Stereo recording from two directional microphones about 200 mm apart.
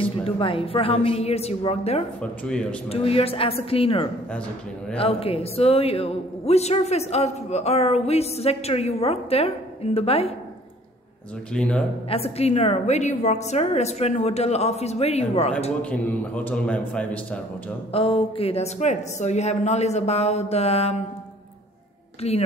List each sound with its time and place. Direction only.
0.0 s a woman's voice: 25° left (ahead or behind)
2.4 s a man's voice: 5° left (ahead or behind)
2.9 s a woman's voice: 30° left (ahead or behind)
11.5 s a man's voice: 5° left (ahead or behind)
12.1 s speech: 30° left (ahead or behind)
15.8 s a man's voice: 5° left (ahead or behind)
17.9 s speech: 25° left (ahead or behind)
22.2 s speech: 30° left (ahead or behind)